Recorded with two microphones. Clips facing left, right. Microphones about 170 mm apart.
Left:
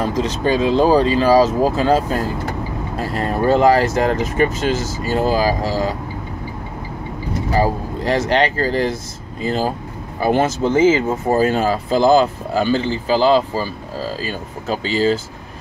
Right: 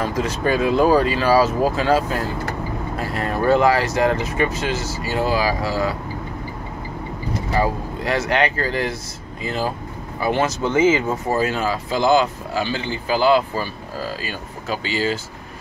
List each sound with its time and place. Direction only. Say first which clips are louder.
0.1 s speech: left 2 dB; 25° left (ahead or behind)
3.2 s speech: left 2 dB; 30° left (ahead or behind)
7.5 s speech: left 3 dB; 35° left (ahead or behind)
10.2 s speech: left 4 dB; 50° left (ahead or behind)
10.6 s speech: left 2 dB; 35° left (ahead or behind)